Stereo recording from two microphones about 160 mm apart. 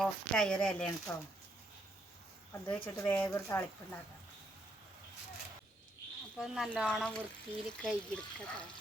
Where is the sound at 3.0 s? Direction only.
15° left (ahead or behind).